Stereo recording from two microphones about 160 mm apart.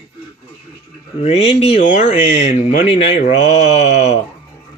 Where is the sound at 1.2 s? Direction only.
40° left (ahead or behind).